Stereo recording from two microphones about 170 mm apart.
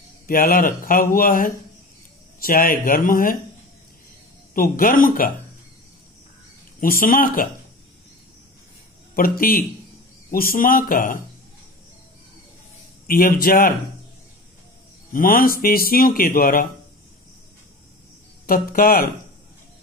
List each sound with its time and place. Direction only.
0.3 s speech: 55° left (ahead or behind)
4.6 s speech: 55° left (ahead or behind)
6.8 s speech: 55° left (ahead or behind)
9.1 s speech: 60° left (ahead or behind)
13.0 s speech: 60° left (ahead or behind)
15.1 s speech: 55° left (ahead or behind)
18.5 s speech: 55° left (ahead or behind)